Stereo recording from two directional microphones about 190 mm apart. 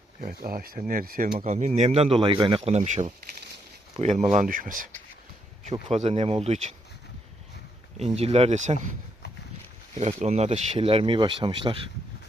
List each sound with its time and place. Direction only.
0.2 s speech: 50° right (ahead or behind)
5.9 s speech: 35° right (ahead or behind)
7.9 s speech: 35° right (ahead or behind)
10.0 s speech: 35° right (ahead or behind)